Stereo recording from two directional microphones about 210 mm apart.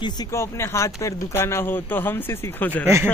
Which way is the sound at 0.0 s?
15° left (ahead or behind).